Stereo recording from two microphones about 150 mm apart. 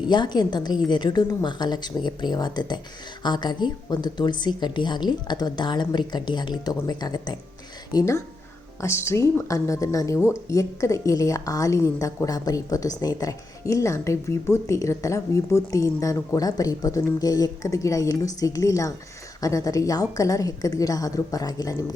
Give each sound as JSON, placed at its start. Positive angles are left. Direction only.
{"t": 0.1, "sound": "a woman's voice", "side_deg": 30}